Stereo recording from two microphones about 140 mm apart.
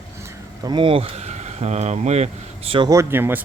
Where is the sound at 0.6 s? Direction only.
35° right (ahead or behind); by 2.2 s 55° right (ahead or behind).